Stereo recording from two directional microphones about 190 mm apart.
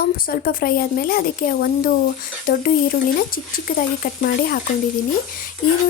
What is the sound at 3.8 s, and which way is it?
Speech, 50° left (ahead or behind).